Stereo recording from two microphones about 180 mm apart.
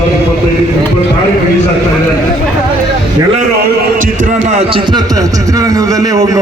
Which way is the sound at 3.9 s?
45° right (ahead or behind).